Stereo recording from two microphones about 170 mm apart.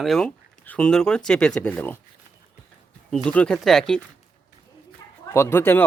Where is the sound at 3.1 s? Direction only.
5° left (ahead or behind).